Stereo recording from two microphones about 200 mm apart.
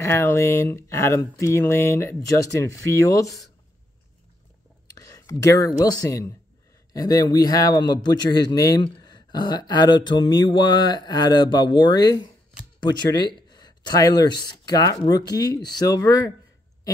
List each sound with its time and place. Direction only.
0.0 s speech: 10° left (ahead or behind)
4.9 s a man's voice: 15° left (ahead or behind)